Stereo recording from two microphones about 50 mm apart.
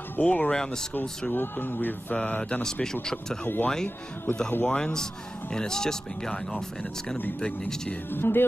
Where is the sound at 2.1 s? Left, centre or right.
Left.